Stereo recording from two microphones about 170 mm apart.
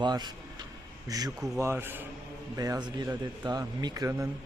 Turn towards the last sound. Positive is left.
turn(degrees=-15)  # may be behind; listen again after turning